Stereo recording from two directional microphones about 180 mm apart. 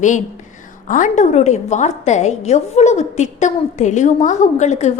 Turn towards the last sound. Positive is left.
turn(degrees=40)  # may be behind; listen again after turning